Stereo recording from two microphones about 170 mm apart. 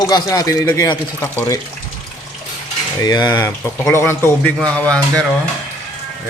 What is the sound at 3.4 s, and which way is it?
Speech, 10° left (ahead or behind).